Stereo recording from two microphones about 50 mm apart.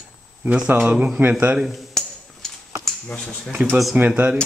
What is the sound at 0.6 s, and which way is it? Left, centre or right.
Speech, right.